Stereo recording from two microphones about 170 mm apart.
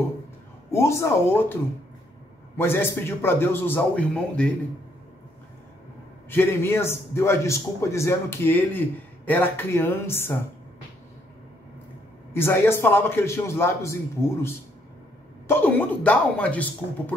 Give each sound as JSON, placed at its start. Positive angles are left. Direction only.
{"t": 0.7, "sound": "a man's voice", "side_deg": 15}
{"t": 6.3, "sound": "a man's voice", "side_deg": 15}
{"t": 12.3, "sound": "a man's voice", "side_deg": 15}